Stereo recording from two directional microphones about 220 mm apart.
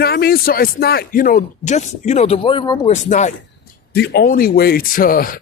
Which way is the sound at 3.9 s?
45° left (ahead or behind).